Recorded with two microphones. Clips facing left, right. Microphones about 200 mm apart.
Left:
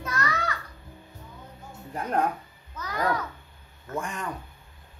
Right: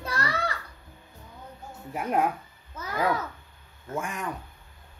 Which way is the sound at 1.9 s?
10° right (ahead or behind).